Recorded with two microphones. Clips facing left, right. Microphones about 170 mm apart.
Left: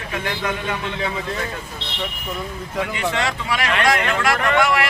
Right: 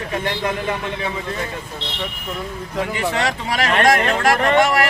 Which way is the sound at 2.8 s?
35° right (ahead or behind).